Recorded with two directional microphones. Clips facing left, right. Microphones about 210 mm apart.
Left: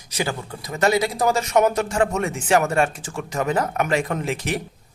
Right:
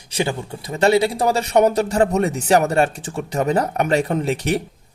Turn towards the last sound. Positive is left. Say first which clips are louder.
# right 4 dB
turn(degrees=-35)  # may be behind; listen again after turning